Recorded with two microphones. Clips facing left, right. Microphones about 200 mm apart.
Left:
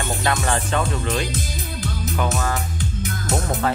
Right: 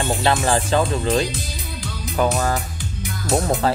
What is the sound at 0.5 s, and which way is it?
Speech, 30° right (ahead or behind).